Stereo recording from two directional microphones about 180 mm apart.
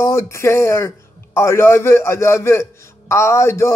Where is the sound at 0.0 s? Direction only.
15° left (ahead or behind).